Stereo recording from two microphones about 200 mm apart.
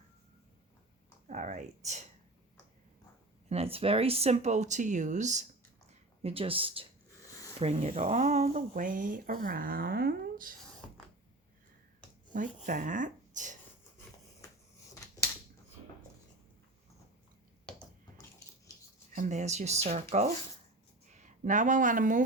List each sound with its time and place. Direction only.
1.3 s speech: 40° right (ahead or behind)
3.5 s speech: 30° right (ahead or behind)
7.2 s a sound: 15° left (ahead or behind)
7.6 s speech: 35° right (ahead or behind)
12.3 s speech: 40° right (ahead or behind)
17.7 s a sound: 5° left (ahead or behind)
19.1 s speech: 40° right (ahead or behind)